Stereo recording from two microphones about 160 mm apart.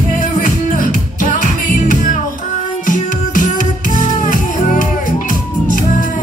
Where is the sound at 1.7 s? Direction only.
60° left (ahead or behind).